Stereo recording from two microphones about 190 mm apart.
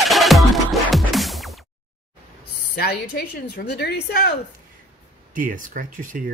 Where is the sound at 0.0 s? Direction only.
Centre (ahead or behind).